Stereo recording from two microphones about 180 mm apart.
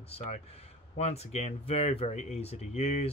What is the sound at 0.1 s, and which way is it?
Speech, 35° left (ahead or behind).